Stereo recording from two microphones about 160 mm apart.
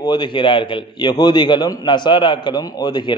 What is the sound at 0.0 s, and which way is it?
A man's voice, 30° left (ahead or behind).